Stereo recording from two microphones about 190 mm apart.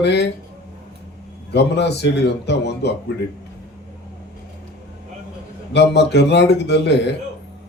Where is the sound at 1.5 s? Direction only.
65° left (ahead or behind).